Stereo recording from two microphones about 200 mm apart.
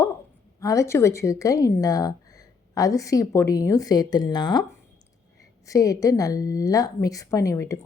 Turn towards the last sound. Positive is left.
turn(degrees=15)  # may be behind; listen again after turning